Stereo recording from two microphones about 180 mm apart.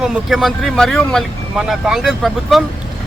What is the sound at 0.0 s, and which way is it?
Speech, 5° right (ahead or behind).